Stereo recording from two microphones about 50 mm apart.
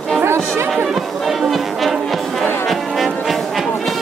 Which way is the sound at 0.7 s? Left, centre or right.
Centre.